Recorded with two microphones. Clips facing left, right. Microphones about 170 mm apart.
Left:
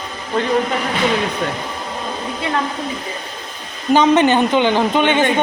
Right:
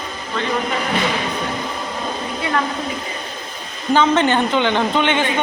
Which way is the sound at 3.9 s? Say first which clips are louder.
Left 3 dB; 15° left (ahead or behind).